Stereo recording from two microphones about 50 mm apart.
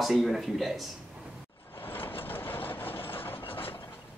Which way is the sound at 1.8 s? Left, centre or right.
Left.